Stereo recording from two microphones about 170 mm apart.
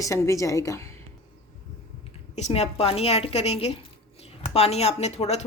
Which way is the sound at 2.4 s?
40° left (ahead or behind).